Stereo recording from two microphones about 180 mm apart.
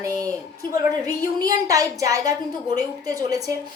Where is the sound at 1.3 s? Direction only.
20° right (ahead or behind).